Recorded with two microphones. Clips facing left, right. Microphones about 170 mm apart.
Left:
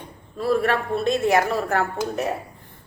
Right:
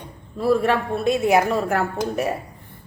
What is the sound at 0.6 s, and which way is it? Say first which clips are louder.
Speech: right 2 dB; 15° right (ahead or behind).